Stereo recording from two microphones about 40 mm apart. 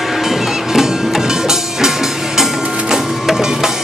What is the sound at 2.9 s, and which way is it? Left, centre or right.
Music, centre.